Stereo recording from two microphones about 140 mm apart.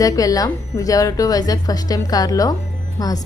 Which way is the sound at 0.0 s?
25° left (ahead or behind).